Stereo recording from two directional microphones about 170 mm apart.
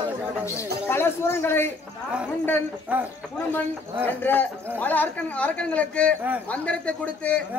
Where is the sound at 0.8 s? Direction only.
15° left (ahead or behind).